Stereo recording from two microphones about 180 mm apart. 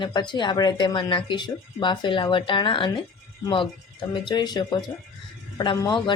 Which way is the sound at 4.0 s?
25° left (ahead or behind).